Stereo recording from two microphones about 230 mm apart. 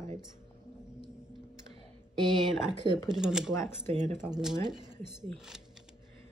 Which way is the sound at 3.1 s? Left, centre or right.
Centre.